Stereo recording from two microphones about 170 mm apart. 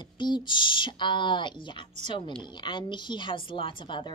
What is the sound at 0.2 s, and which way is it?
A child's voice, 25° left (ahead or behind).